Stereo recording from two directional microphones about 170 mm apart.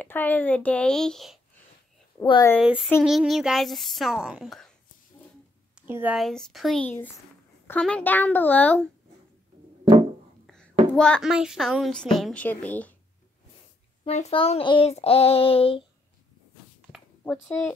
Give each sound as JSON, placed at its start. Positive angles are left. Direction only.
{"t": 0.0, "sound": "speech", "side_deg": 10}
{"t": 2.6, "sound": "a woman's voice", "side_deg": -5}
{"t": 5.8, "sound": "a woman's voice", "side_deg": -10}
{"t": 6.1, "sound": "a woman's voice", "side_deg": 0}
{"t": 10.4, "sound": "a sound", "side_deg": 5}
{"t": 11.0, "sound": "a woman's voice", "side_deg": 5}
{"t": 14.0, "sound": "child singing", "side_deg": 35}
{"t": 17.2, "sound": "speech", "side_deg": 10}